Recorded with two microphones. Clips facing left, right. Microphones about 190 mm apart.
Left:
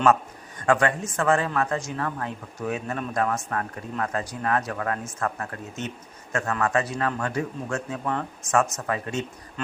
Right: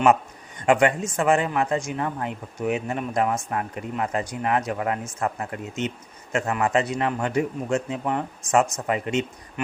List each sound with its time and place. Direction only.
0.6 s a man's voice: 15° right (ahead or behind)